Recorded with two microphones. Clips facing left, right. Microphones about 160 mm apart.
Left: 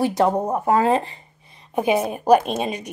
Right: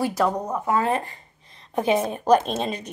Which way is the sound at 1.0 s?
10° left (ahead or behind).